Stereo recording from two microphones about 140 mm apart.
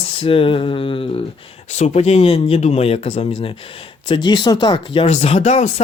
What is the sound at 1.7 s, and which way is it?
Speech, 55° left (ahead or behind).